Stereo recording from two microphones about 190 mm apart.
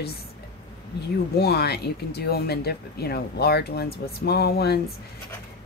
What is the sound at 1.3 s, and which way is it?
Speech, 55° left (ahead or behind).